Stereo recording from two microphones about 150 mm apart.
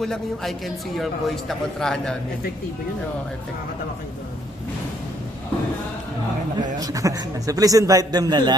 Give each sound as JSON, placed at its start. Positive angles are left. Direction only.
{"t": 0.0, "sound": "a man's voice", "side_deg": 0}
{"t": 6.8, "sound": "a man's voice", "side_deg": -20}